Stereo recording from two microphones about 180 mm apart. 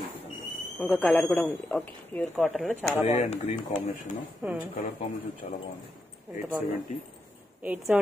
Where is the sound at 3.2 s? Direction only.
35° left (ahead or behind).